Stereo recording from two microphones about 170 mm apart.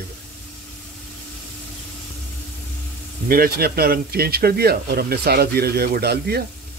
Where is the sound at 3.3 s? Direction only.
60° right (ahead or behind).